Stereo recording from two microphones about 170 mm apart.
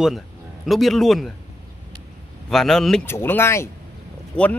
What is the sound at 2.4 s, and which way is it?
A man's voice, centre (ahead or behind).